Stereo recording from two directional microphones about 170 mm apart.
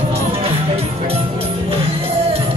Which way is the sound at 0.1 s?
35° right (ahead or behind).